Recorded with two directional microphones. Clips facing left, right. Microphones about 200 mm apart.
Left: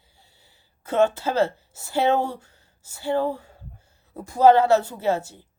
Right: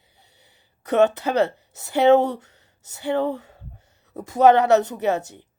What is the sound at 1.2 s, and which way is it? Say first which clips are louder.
Speech: right 1 dB; 20° right (ahead or behind).